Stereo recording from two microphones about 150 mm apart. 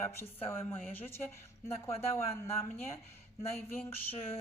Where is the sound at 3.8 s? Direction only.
40° left (ahead or behind).